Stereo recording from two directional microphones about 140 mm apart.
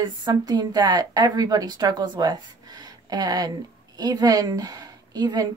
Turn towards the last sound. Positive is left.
turn(degrees=-25)  # may be behind; listen again after turning